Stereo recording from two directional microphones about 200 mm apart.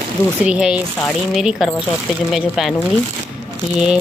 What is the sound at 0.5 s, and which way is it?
Speech, 5° right (ahead or behind).